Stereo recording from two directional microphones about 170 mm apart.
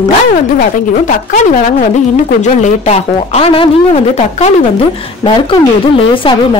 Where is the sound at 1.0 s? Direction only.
45° left (ahead or behind).